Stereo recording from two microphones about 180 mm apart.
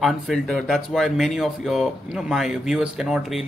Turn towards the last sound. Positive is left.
turn(degrees=-5)  # may be behind; listen again after turning